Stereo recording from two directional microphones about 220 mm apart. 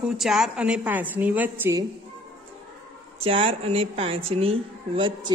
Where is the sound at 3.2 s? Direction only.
25° right (ahead or behind).